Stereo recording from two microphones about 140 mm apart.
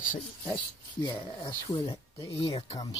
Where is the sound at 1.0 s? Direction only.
30° left (ahead or behind).